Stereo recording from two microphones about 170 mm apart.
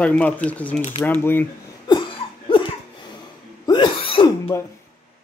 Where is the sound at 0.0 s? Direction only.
10° left (ahead or behind).